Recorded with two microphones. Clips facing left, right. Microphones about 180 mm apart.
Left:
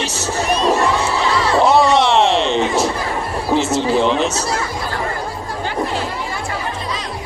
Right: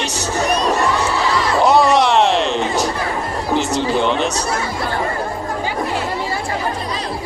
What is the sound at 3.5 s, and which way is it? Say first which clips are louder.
Speech: left 2 dB; centre (ahead or behind).